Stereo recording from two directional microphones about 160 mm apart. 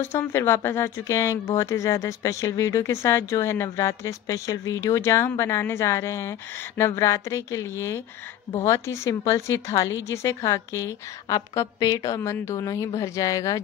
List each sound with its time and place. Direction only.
0.0 s speech: 15° left (ahead or behind)